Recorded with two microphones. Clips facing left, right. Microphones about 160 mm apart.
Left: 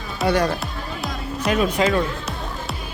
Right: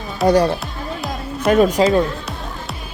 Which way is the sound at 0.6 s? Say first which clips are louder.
Right 2 dB; centre (ahead or behind).